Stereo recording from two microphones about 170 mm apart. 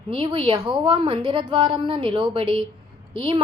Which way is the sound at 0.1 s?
30° right (ahead or behind).